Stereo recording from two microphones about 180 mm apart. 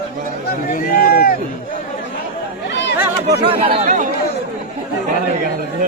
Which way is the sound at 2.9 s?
10° right (ahead or behind).